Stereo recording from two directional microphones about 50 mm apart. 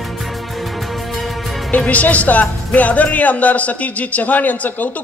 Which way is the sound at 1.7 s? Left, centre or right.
Left.